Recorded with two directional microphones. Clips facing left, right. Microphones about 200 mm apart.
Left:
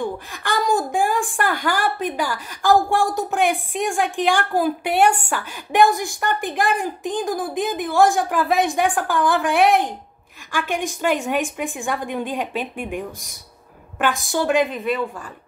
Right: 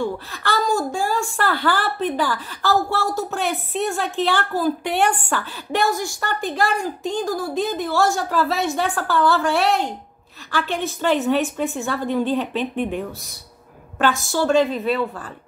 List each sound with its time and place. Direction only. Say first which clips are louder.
0.0 s a sound: right 2 dB; 15° left (ahead or behind)
0.7 s a woman's voice: left 2 dB; 15° left (ahead or behind)
4.9 s a woman's voice: left 3 dB; 40° left (ahead or behind)
5.3 s a woman's voice: even; 15° left (ahead or behind)
14.3 s a woman's voice: right 1 dB; 15° left (ahead or behind)